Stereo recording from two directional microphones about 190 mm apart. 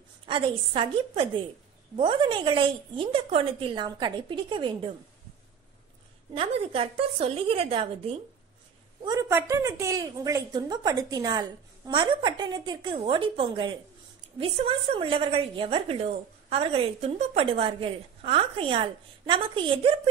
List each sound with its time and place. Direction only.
0.3 s a woman's voice: 30° right (ahead or behind)
6.3 s a woman's voice: 30° right (ahead or behind)
9.0 s a woman's voice: 20° right (ahead or behind)